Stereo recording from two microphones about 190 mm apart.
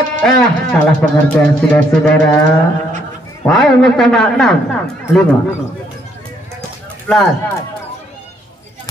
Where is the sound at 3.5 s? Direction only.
Centre (ahead or behind).